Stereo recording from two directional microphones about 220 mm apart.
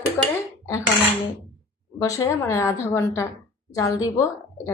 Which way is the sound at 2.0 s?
15° left (ahead or behind).